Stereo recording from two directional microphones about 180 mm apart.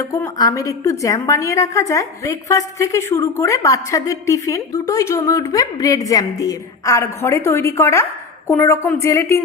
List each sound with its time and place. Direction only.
0.0 s a woman's voice: 20° left (ahead or behind)